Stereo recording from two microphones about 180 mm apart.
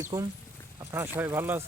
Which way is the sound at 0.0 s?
20° right (ahead or behind).